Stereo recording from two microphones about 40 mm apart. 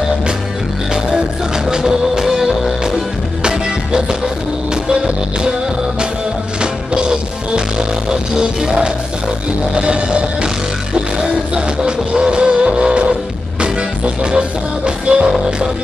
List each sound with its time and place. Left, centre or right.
1.7 s music: centre
6.6 s music: right